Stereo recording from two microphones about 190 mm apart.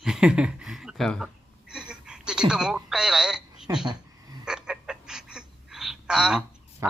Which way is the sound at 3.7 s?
15° right (ahead or behind).